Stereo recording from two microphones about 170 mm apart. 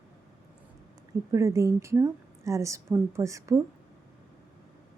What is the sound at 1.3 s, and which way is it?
A woman's voice, 20° right (ahead or behind).